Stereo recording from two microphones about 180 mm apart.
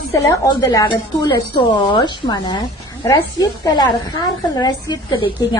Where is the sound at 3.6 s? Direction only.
25° left (ahead or behind).